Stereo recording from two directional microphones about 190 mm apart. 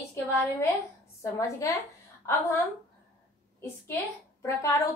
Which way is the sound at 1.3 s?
15° left (ahead or behind).